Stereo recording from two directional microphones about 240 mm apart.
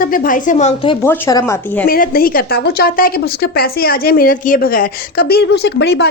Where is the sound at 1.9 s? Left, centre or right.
Left.